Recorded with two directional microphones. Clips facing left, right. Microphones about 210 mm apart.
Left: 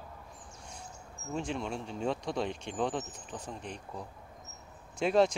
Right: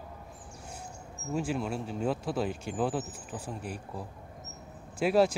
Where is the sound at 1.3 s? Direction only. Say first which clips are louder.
Right 3 dB; 5° right (ahead or behind).